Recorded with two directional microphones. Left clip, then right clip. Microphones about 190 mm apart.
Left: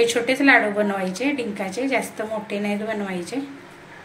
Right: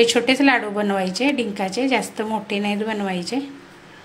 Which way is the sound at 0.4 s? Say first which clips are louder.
Left 2 dB; 50° right (ahead or behind).